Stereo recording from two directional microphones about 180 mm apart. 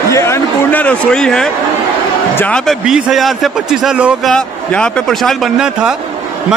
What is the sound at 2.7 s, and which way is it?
A man's voice, 5° right (ahead or behind).